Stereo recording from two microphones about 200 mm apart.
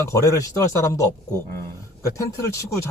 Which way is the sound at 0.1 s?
15° left (ahead or behind).